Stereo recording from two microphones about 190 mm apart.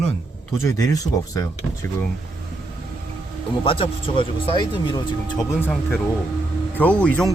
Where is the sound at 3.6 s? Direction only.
30° left (ahead or behind).